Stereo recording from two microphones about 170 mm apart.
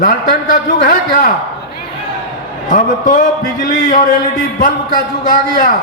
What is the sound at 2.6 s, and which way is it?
A man's voice, 50° left (ahead or behind).